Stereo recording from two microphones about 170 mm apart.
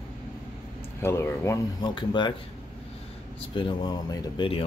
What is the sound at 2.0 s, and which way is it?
Speech, 25° left (ahead or behind).